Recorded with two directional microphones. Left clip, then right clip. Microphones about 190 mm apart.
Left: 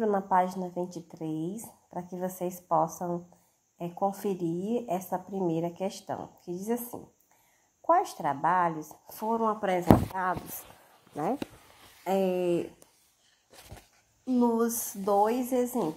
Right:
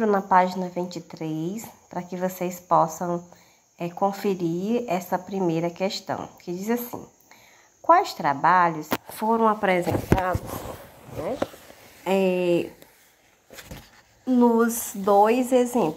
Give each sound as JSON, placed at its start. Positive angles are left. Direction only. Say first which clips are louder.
{"t": 0.0, "sound": "a woman's voice", "louder": "right 6 dB", "side_deg": -15}
{"t": 12.0, "sound": "a woman's voice", "louder": "right 5 dB", "side_deg": -20}
{"t": 14.2, "sound": "a woman's voice", "louder": "right 7 dB", "side_deg": -15}